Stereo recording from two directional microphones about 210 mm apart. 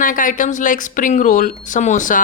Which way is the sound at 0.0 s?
40° left (ahead or behind).